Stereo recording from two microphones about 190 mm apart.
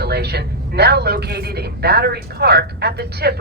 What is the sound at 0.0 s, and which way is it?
A man's voice, 60° right (ahead or behind).